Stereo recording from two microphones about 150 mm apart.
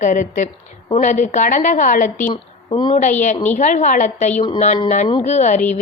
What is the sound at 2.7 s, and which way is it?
Speech, 30° left (ahead or behind).